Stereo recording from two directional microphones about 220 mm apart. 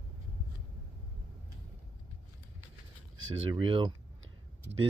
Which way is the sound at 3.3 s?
25° right (ahead or behind).